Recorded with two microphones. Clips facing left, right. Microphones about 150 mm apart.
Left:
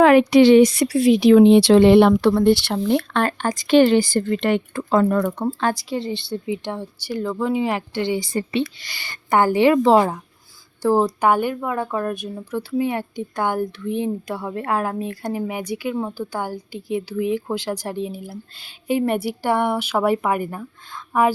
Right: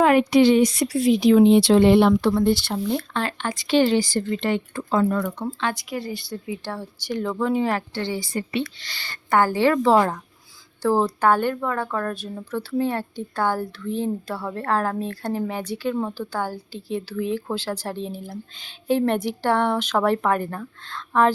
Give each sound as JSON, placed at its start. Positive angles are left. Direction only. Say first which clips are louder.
{"t": 0.0, "sound": "speech", "louder": "left 4 dB", "side_deg": 90}
{"t": 3.2, "sound": "speech", "louder": "left 5 dB", "side_deg": 45}
{"t": 5.5, "sound": "speech", "louder": "left 5 dB", "side_deg": 45}
{"t": 5.9, "sound": "speech", "louder": "left 4 dB", "side_deg": 25}
{"t": 7.1, "sound": "speech", "louder": "left 1 dB", "side_deg": 5}